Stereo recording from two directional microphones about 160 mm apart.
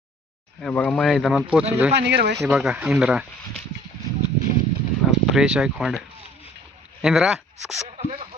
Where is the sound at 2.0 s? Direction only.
90° right.